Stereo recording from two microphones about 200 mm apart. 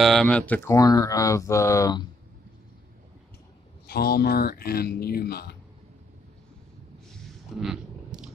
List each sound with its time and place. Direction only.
0.0 s speech: centre (ahead or behind)
0.7 s speech: 15° left (ahead or behind)
3.8 s speech: 50° left (ahead or behind)
7.1 s a sound: centre (ahead or behind)